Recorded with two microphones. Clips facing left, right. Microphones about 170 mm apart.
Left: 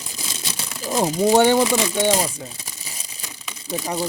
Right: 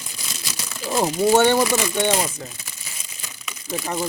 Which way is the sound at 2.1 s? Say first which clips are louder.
Left 1 dB; 35° left (ahead or behind).